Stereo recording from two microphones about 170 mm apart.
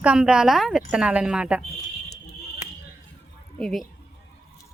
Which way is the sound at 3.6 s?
Centre (ahead or behind).